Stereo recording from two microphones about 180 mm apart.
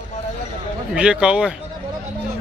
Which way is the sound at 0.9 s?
5° right (ahead or behind).